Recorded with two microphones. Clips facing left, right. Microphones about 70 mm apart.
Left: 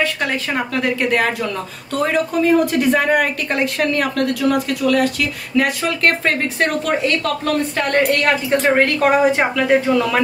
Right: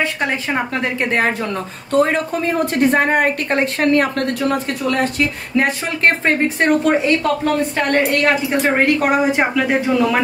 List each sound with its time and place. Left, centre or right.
0.0 s a woman's voice: right